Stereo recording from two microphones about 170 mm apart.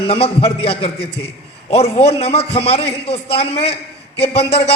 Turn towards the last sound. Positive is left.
turn(degrees=35)  # may be behind; listen again after turning